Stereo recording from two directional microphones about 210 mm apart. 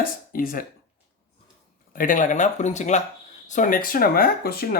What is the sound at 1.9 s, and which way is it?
Speech, 40° left (ahead or behind).